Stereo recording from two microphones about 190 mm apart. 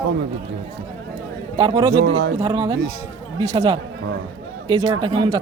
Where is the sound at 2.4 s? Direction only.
25° right (ahead or behind).